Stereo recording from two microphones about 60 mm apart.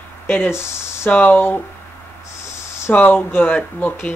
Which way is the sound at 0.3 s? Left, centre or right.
Left.